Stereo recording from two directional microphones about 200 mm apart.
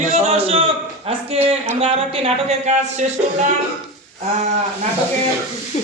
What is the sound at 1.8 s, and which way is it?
A woman's voice, 30° right (ahead or behind).